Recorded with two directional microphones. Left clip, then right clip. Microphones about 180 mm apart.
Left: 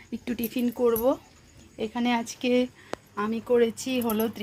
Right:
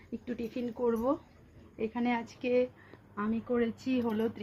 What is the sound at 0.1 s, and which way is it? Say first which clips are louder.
A woman's voice: left 6 dB; 45° left (ahead or behind).